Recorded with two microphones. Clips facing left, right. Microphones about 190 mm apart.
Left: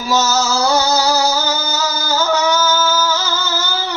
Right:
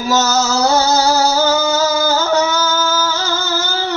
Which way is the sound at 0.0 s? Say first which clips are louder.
Right 1 dB; 45° right (ahead or behind).